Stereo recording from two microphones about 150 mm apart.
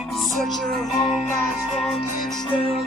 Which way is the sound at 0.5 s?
30° left (ahead or behind).